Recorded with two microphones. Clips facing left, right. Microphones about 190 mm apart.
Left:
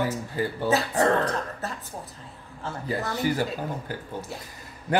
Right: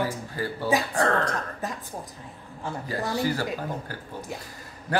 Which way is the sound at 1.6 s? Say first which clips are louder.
Right 1 dB; 15° right (ahead or behind).